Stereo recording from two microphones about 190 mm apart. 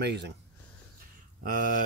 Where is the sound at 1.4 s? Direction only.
45° right (ahead or behind).